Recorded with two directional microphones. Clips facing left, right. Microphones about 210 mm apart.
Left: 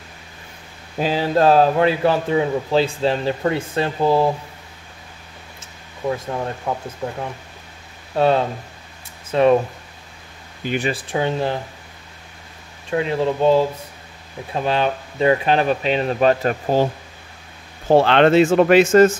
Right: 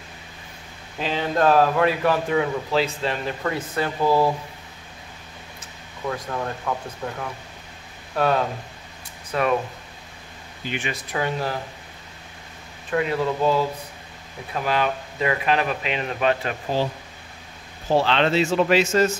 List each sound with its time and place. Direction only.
0.9 s speech: 40° left (ahead or behind)
6.0 s speech: 25° left (ahead or behind)
8.2 s speech: 25° left (ahead or behind)
10.6 s speech: 40° left (ahead or behind); by 11.5 s 25° left (ahead or behind)
12.9 s speech: 25° left (ahead or behind); by 16.9 s 45° left (ahead or behind)
17.8 s speech: 55° left (ahead or behind)